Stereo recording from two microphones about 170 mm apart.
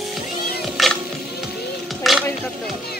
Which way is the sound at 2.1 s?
Centre (ahead or behind).